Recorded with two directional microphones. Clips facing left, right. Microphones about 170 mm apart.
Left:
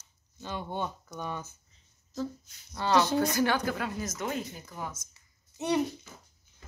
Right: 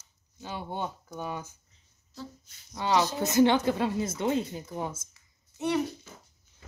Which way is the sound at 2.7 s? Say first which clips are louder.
Left 1 dB; 15° right (ahead or behind).